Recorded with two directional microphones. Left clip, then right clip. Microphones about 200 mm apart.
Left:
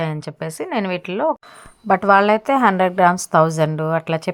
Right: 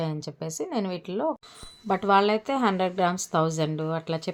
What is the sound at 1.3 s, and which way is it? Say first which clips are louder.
Speech: left 9 dB; 30° left (ahead or behind).